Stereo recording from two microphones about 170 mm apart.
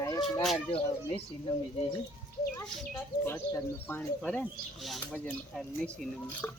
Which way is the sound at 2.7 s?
10° left (ahead or behind).